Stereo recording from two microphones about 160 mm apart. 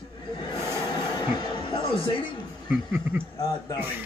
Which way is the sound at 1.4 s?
30° left (ahead or behind).